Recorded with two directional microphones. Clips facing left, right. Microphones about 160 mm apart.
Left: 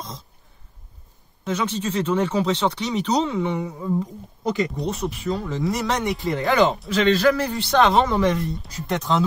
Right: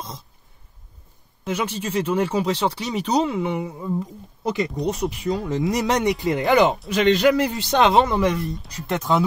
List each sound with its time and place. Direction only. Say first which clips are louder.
1.4 s speech: left 1 dB; 10° right (ahead or behind)
5.1 s speech: right 2 dB; 15° right (ahead or behind)
6.4 s speech: right 1 dB; centre (ahead or behind)
7.2 s speech: right 1 dB; 15° right (ahead or behind)
8.2 s speech: left 1 dB; centre (ahead or behind)